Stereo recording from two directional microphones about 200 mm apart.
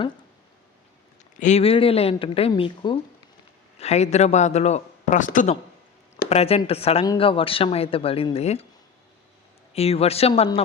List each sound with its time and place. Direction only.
1.4 s speech: 35° left (ahead or behind)
9.7 s speech: 30° left (ahead or behind)